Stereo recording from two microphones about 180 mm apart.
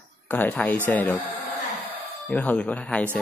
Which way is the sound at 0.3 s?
10° left (ahead or behind).